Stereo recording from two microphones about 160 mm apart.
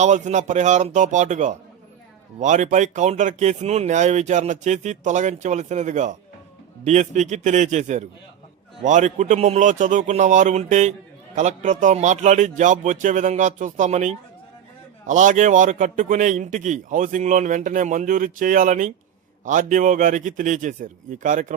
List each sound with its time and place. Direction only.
0.0 s a man's voice: 45° right (ahead or behind)